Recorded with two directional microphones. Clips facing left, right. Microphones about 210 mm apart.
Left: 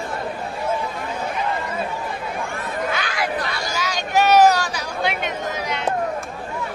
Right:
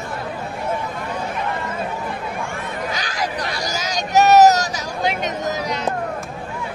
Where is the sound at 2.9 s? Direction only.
40° right (ahead or behind).